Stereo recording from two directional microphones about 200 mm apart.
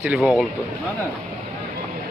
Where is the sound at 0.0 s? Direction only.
5° right (ahead or behind).